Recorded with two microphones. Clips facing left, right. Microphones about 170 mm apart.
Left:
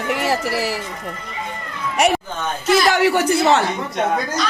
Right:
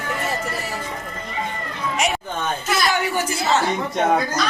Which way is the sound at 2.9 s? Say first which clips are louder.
Left 6 dB; 75° left (ahead or behind).